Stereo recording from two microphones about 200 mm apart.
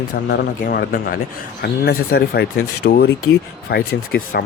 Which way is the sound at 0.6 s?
45° left (ahead or behind).